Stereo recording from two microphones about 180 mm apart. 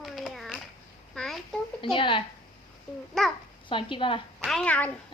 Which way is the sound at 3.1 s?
Centre (ahead or behind).